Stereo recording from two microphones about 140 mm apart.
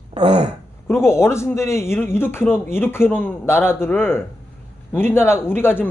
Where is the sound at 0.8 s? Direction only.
20° left (ahead or behind).